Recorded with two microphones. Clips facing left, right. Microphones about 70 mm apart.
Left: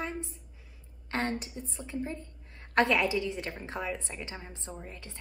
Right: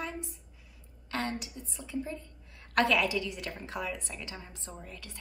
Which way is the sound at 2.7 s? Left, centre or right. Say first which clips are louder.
Left 1 dB; left.